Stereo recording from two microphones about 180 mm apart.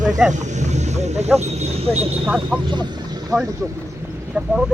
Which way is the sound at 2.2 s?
5° right (ahead or behind).